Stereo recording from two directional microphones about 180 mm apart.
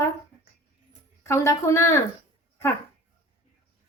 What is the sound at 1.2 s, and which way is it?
Speech, 15° left (ahead or behind).